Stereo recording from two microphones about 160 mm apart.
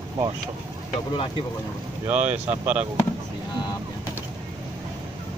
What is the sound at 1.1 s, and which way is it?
Speech, 35° left (ahead or behind).